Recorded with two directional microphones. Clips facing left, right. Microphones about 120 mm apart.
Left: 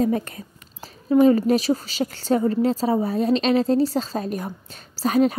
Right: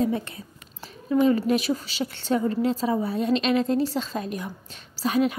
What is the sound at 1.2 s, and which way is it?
A woman's voice, 35° left (ahead or behind).